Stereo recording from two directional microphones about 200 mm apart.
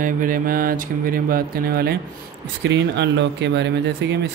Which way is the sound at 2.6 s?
60° right (ahead or behind).